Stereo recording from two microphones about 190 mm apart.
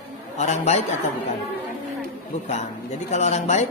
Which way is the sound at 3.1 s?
35° left (ahead or behind).